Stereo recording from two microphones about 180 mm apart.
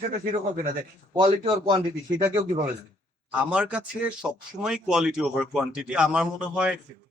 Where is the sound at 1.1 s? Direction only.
25° right (ahead or behind).